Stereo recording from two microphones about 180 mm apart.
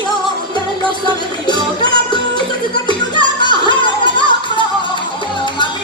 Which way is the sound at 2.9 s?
25° left (ahead or behind).